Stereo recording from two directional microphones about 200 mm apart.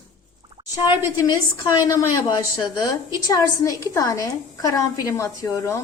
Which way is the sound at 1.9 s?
15° left (ahead or behind).